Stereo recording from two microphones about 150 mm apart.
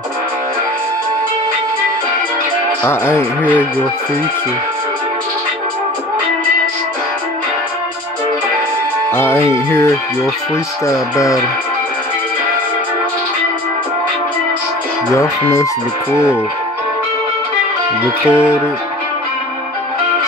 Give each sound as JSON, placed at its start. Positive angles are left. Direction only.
{"t": 2.8, "sound": "speech", "side_deg": 15}
{"t": 9.1, "sound": "speech", "side_deg": 15}
{"t": 15.1, "sound": "speech", "side_deg": 20}
{"t": 18.3, "sound": "speech", "side_deg": 15}